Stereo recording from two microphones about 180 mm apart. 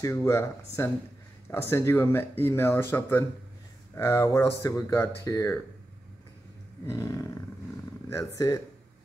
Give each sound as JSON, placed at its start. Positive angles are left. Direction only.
{"t": 0.0, "sound": "speech", "side_deg": 15}
{"t": 6.9, "sound": "speech", "side_deg": 20}